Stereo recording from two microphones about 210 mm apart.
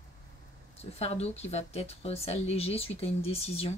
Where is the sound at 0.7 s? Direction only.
30° left (ahead or behind).